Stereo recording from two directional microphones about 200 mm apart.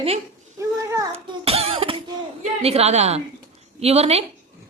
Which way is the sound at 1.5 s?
30° right (ahead or behind).